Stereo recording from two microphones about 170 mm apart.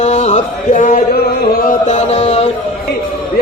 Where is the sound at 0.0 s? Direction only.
40° left (ahead or behind).